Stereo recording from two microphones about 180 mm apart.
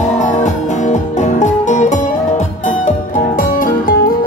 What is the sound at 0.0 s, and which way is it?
Music, 40° left (ahead or behind).